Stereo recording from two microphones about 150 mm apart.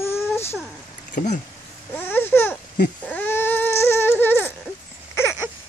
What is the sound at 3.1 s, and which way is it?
Baby cry, 10° left (ahead or behind).